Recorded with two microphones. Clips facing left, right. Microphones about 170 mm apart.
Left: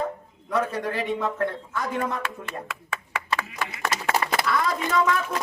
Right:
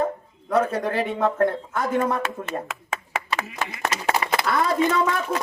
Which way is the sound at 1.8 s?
35° right (ahead or behind).